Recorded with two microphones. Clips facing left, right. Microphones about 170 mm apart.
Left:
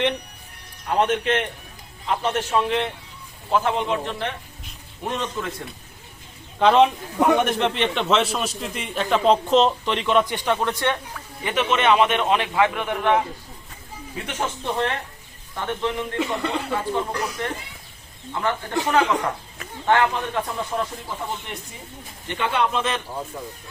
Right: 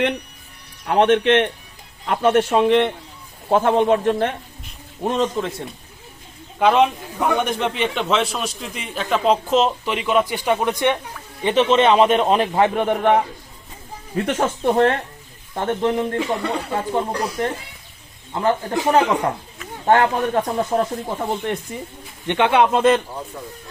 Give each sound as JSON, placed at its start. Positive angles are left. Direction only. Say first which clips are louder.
{"t": 0.9, "sound": "a man's voice", "louder": "right 6 dB", "side_deg": -60}
{"t": 5.0, "sound": "a man's voice", "louder": "right 7 dB", "side_deg": -30}
{"t": 6.6, "sound": "a man's voice", "louder": "even", "side_deg": -5}
{"t": 11.4, "sound": "a man's voice", "louder": "right 5 dB", "side_deg": -30}
{"t": 16.9, "sound": "a man's voice", "louder": "right 3 dB", "side_deg": -30}
{"t": 18.9, "sound": "a man's voice", "louder": "right 4 dB", "side_deg": -35}
{"t": 21.2, "sound": "a man's voice", "louder": "right 9 dB", "side_deg": -55}
{"t": 22.3, "sound": "a man's voice", "louder": "right 7 dB", "side_deg": -70}